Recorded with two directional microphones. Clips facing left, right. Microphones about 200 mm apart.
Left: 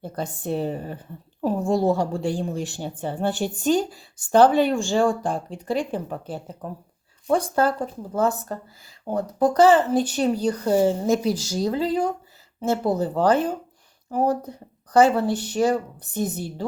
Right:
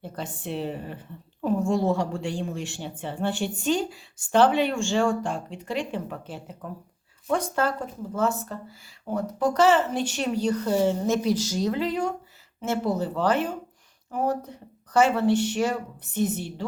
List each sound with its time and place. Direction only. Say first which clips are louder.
0.0 s a woman's voice: left 5 dB; 40° left (ahead or behind)